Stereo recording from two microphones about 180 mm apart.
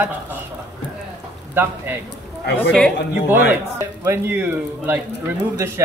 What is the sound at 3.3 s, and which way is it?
A man's voice, 15° right (ahead or behind).